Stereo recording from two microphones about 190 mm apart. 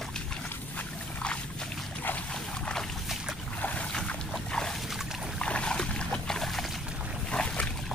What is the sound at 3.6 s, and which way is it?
Boat, 10° left (ahead or behind).